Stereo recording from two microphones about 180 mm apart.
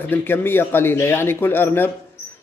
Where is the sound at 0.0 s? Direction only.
10° left (ahead or behind).